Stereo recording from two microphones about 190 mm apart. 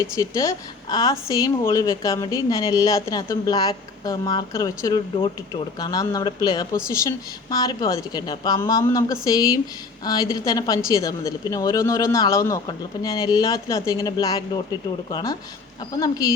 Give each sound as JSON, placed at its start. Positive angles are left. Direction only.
{"t": 0.0, "sound": "speech", "side_deg": 15}